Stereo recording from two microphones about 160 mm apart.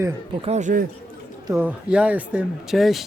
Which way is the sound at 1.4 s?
15° right (ahead or behind).